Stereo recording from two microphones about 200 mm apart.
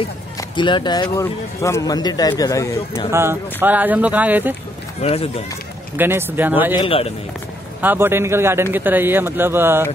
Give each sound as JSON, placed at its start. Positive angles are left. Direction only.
{"t": 0.4, "sound": "a man's voice", "side_deg": 25}
{"t": 3.1, "sound": "speech", "side_deg": -10}
{"t": 5.0, "sound": "a man's voice", "side_deg": 30}
{"t": 5.9, "sound": "speech", "side_deg": -10}
{"t": 6.8, "sound": "a man's voice", "side_deg": 30}
{"t": 7.8, "sound": "speech", "side_deg": -10}